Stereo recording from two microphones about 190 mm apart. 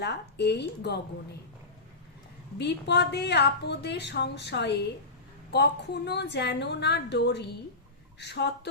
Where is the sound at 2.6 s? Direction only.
60° left (ahead or behind).